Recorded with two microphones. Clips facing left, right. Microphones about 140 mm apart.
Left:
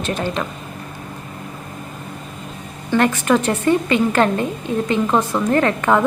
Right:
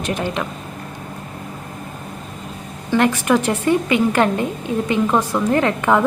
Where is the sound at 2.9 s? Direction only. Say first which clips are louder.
Even; 15° right (ahead or behind).